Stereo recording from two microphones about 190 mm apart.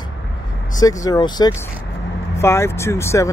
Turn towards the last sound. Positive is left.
turn(degrees=15)  # may be behind; listen again after turning